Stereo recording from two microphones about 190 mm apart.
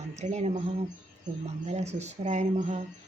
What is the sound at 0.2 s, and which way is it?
Speech, 35° right (ahead or behind).